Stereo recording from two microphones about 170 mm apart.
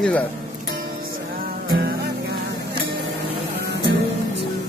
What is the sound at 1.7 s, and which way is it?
Music, 60° right (ahead or behind).